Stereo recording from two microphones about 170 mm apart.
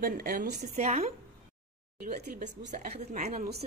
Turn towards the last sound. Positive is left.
turn(degrees=-45)  # may be behind; listen again after turning